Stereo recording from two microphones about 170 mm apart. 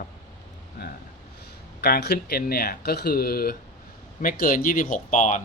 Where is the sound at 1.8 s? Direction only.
70° left (ahead or behind).